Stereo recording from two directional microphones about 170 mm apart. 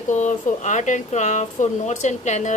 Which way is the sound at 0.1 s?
45° left (ahead or behind).